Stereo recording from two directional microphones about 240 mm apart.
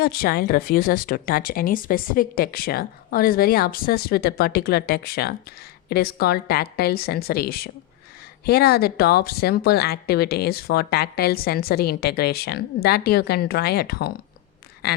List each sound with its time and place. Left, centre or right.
0.0 s speech: left